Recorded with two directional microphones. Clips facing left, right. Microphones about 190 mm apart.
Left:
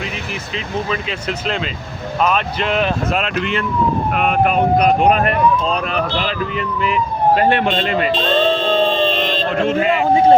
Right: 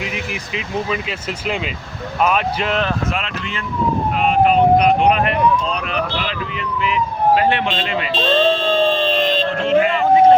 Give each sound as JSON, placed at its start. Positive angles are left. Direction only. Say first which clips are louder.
{"t": 2.2, "sound": "speech", "louder": "even", "side_deg": -5}
{"t": 4.2, "sound": "speech", "louder": "right 3 dB", "side_deg": 55}
{"t": 8.4, "sound": "music", "louder": "even", "side_deg": 15}
{"t": 9.6, "sound": "speech", "louder": "right 2 dB", "side_deg": 50}
{"t": 9.8, "sound": "a sound", "louder": "right 1 dB", "side_deg": 30}